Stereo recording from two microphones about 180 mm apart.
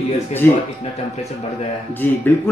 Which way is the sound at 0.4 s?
10° left (ahead or behind).